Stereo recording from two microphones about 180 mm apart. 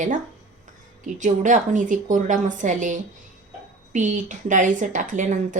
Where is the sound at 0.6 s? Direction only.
45° right (ahead or behind).